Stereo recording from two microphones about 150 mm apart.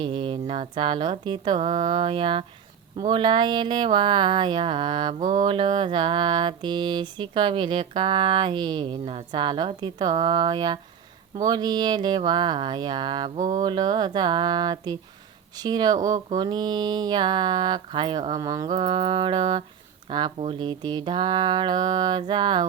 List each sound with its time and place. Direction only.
0.0 s mantra: 35° right (ahead or behind)
11.4 s speech: 25° right (ahead or behind)
13.3 s mantra: 55° right (ahead or behind)
13.6 s speech: 30° right (ahead or behind)
20.4 s mantra: 35° right (ahead or behind)